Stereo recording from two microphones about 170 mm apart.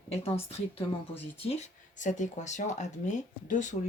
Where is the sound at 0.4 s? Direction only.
35° left (ahead or behind).